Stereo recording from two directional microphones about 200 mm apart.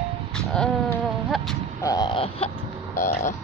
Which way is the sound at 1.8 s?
20° left (ahead or behind).